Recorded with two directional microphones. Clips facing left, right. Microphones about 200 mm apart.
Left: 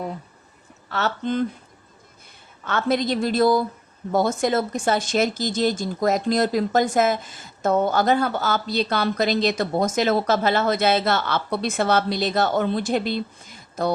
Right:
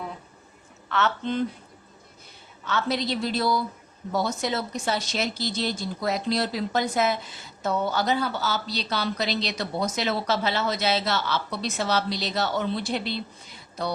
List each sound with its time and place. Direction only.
0.9 s speech: 40° left (ahead or behind)
2.6 s speech: 50° left (ahead or behind)